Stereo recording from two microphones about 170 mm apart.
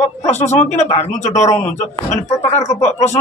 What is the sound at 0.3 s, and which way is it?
Speech, 40° left (ahead or behind).